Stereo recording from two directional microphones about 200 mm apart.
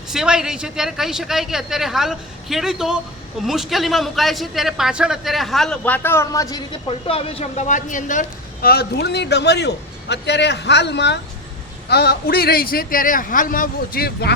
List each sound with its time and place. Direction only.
0.1 s a man's voice: 5° right (ahead or behind); by 6.6 s 15° left (ahead or behind)
7.1 s a man's voice: 30° left (ahead or behind); by 14.3 s 50° left (ahead or behind)